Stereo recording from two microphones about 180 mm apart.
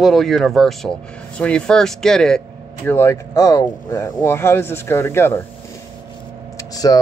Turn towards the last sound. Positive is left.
turn(degrees=20)  # may be behind; listen again after turning